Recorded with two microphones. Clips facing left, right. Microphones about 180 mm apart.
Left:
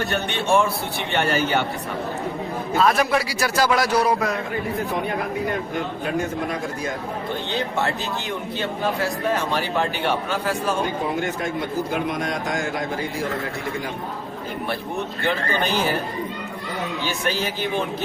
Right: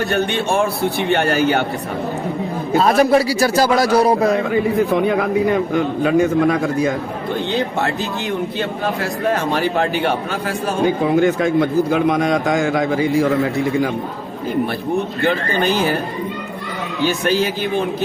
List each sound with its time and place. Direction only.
1.1 s speech: 50° right (ahead or behind)
2.7 s a man's voice: 35° right (ahead or behind)
4.4 s speech: 90° right
11.0 s speech: 90° right